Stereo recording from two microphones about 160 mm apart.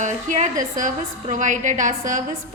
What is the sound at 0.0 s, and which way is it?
A woman's voice, 50° right (ahead or behind).